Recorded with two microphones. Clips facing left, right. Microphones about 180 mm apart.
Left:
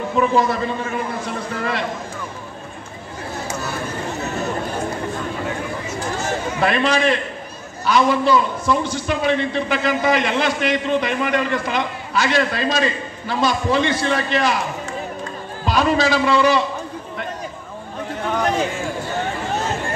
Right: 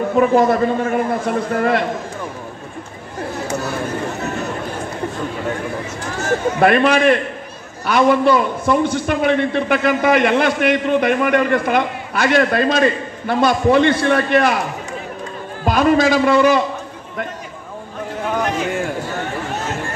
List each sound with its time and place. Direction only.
0.1 s a man's voice: 50° right (ahead or behind)
6.6 s a man's voice: 55° right (ahead or behind)
15.6 s a man's voice: 50° right (ahead or behind)